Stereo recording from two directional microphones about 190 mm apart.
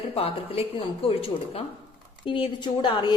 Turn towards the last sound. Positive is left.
turn(degrees=25)  # may be behind; listen again after turning